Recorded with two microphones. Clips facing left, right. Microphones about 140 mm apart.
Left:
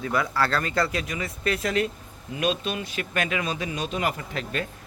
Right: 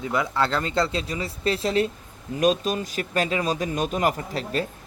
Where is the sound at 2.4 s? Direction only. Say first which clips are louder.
Right 5 dB; 40° right (ahead or behind).